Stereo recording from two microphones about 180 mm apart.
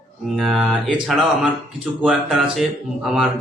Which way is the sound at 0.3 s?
Centre (ahead or behind).